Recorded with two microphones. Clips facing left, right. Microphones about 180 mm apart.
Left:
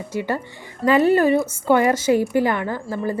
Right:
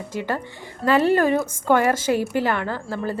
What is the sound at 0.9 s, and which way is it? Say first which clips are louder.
A woman's voice: left 2 dB; 10° left (ahead or behind).